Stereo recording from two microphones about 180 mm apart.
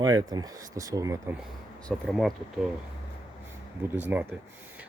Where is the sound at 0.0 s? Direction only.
20° right (ahead or behind).